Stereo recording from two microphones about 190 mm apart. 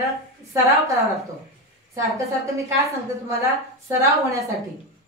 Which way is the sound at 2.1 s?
15° right (ahead or behind).